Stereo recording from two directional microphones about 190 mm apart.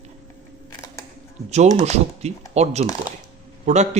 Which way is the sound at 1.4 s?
35° right (ahead or behind).